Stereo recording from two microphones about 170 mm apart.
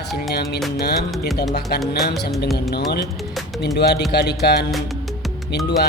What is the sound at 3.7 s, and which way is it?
Speech, 75° left (ahead or behind).